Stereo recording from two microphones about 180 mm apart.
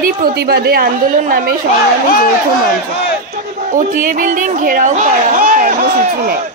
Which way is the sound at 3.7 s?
45° right (ahead or behind).